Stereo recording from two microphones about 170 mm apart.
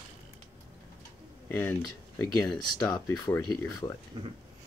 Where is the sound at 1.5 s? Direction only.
15° left (ahead or behind).